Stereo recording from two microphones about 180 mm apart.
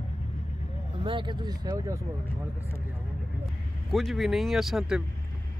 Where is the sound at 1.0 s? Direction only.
25° right (ahead or behind).